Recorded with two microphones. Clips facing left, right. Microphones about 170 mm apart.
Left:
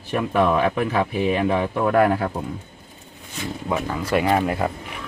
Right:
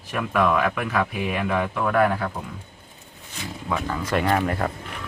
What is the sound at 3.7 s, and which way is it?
Speech, 10° left (ahead or behind).